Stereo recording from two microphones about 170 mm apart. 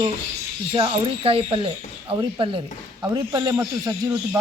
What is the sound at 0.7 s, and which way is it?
Speech, 30° right (ahead or behind).